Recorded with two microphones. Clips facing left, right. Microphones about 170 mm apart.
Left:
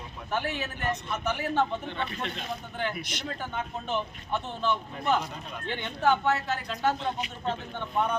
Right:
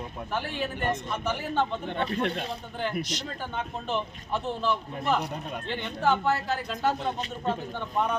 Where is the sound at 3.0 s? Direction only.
55° left (ahead or behind).